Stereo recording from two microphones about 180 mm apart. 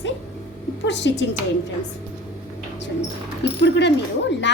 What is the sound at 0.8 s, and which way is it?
Speech, 75° left (ahead or behind).